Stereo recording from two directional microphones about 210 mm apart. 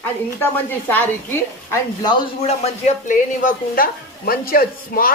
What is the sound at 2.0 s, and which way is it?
Speech, 20° left (ahead or behind).